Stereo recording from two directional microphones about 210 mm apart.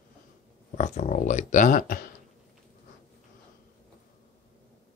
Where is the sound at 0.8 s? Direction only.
35° left (ahead or behind).